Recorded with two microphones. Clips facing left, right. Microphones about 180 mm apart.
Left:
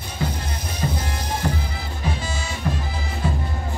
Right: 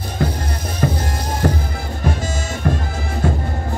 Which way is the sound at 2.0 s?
45° right (ahead or behind).